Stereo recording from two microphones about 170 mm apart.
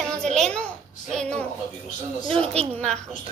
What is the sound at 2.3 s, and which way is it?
Speech, 35° right (ahead or behind).